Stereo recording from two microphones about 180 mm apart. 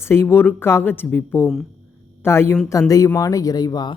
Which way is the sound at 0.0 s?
15° left (ahead or behind).